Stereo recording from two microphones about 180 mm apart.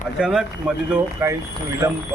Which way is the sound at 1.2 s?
15° right (ahead or behind).